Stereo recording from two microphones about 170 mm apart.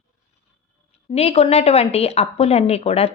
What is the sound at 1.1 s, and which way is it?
A woman's voice, 35° left (ahead or behind).